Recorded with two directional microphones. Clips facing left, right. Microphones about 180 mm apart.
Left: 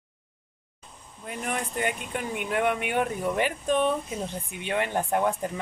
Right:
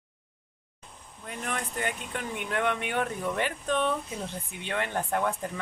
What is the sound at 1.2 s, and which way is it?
Speech, 15° left (ahead or behind).